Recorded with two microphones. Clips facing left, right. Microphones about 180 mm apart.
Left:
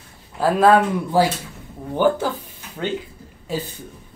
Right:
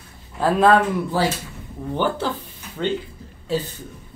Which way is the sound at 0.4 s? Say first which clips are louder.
Left 1 dB; 5° left (ahead or behind).